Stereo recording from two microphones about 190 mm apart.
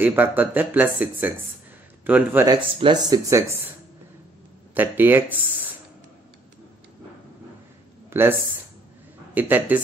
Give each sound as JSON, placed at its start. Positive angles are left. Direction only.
{"t": 0.0, "sound": "speech", "side_deg": -10}
{"t": 4.7, "sound": "speech", "side_deg": -10}
{"t": 8.1, "sound": "speech", "side_deg": -10}